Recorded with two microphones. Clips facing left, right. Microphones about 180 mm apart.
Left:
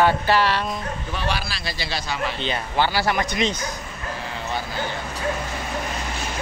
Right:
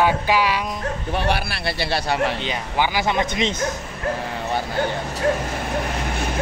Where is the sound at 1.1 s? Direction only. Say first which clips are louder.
Right 5 dB; 60° right (ahead or behind).